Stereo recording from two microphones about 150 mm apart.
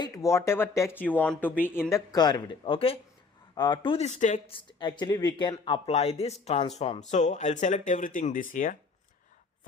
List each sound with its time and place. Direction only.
0.0 s speech: 20° left (ahead or behind)
1.9 s speech: 30° left (ahead or behind)
3.9 s speech: 50° left (ahead or behind)
4.4 s speech: 35° left (ahead or behind)
4.9 s speech: 25° left (ahead or behind); by 8.8 s 65° left (ahead or behind)